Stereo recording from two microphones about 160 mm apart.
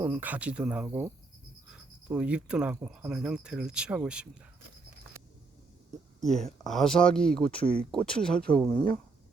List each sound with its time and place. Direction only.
0.0 s speech: 10° right (ahead or behind)
6.1 s speech: centre (ahead or behind)
7.4 s speech: 35° left (ahead or behind)
7.9 s speech: 5° left (ahead or behind)